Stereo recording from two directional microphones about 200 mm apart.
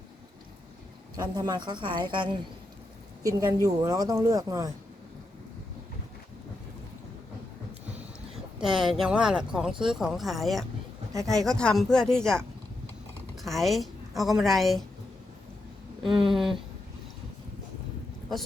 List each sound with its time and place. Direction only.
1.1 s a woman's voice: 20° right (ahead or behind)
8.6 s speech: centre (ahead or behind)
16.0 s speech: centre (ahead or behind)